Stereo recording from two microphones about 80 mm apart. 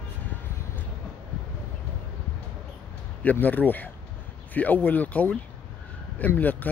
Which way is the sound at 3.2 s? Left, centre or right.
Left.